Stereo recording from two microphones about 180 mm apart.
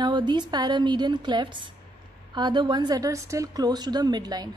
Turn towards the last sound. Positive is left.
turn(degrees=-20)  # may be behind; listen again after turning